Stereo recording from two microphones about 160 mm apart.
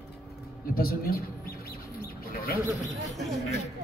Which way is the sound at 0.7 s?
65° left (ahead or behind).